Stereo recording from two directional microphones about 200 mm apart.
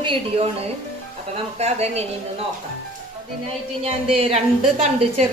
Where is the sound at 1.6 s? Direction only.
30° right (ahead or behind).